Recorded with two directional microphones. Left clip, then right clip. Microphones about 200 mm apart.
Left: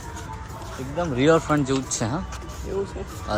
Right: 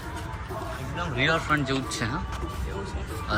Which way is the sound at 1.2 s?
30° left (ahead or behind).